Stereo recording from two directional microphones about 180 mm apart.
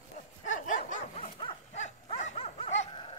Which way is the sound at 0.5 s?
45° left (ahead or behind).